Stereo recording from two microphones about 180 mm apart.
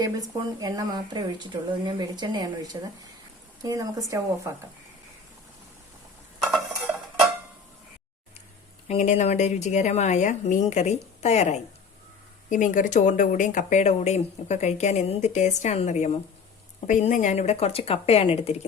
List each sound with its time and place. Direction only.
0.0 s speech: 20° right (ahead or behind)
6.5 s a sound: 5° right (ahead or behind)
8.9 s speech: 40° left (ahead or behind)